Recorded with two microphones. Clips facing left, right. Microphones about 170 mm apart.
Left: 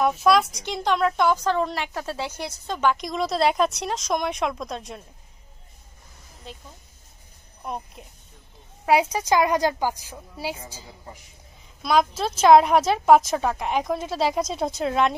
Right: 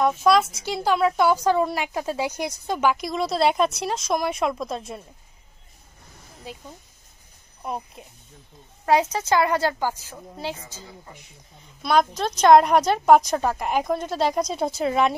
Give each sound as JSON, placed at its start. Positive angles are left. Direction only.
{"t": 0.0, "sound": "a woman's voice", "side_deg": 0}
{"t": 7.6, "sound": "a woman's voice", "side_deg": 0}
{"t": 8.8, "sound": "a woman's voice", "side_deg": 10}
{"t": 11.6, "sound": "a woman's voice", "side_deg": 0}